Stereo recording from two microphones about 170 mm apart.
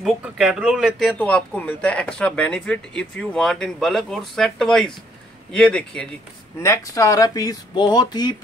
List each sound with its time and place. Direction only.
0.0 s speech: 5° right (ahead or behind)
6.6 s speech: 20° left (ahead or behind)